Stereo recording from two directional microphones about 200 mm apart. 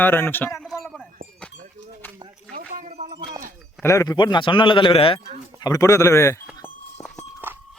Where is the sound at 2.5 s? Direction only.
40° right (ahead or behind).